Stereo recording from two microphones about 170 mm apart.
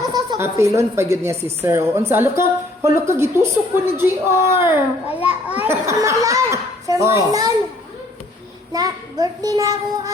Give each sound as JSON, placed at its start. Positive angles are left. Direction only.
{"t": 0.1, "sound": "a sound", "side_deg": -25}
{"t": 0.4, "sound": "a child's voice", "side_deg": -20}
{"t": 8.7, "sound": "a child's voice", "side_deg": -20}